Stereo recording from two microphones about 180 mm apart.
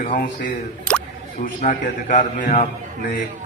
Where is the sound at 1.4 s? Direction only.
45° left (ahead or behind).